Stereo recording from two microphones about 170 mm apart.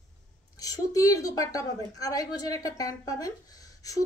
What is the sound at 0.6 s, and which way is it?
Speech, 20° left (ahead or behind).